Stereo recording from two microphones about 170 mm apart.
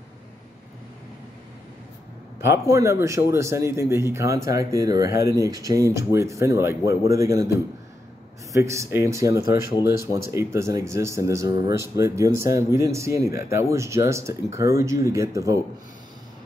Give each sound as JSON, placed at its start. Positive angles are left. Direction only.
{"t": 2.4, "sound": "speech", "side_deg": -15}
{"t": 9.4, "sound": "speech", "side_deg": 60}
{"t": 10.1, "sound": "speech", "side_deg": -15}